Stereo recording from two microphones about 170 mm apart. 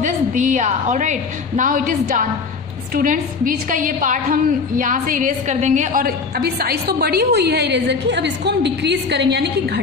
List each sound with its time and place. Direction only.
0.0 s a woman's voice: 45° right (ahead or behind); by 9.5 s 85° right